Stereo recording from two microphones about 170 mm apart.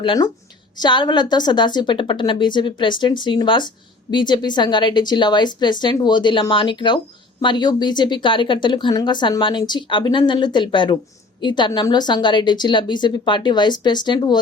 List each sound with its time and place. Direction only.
0.0 s a woman's voice: 25° left (ahead or behind)